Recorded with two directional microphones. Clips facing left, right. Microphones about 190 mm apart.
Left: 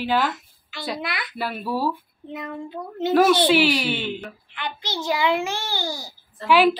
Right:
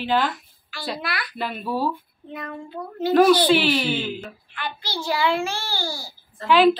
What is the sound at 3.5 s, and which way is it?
Speech, 10° left (ahead or behind).